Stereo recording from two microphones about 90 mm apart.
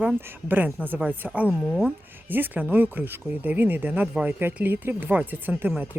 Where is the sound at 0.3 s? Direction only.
20° right (ahead or behind).